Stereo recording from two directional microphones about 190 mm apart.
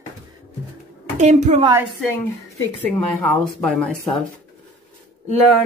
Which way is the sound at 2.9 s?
5° left (ahead or behind).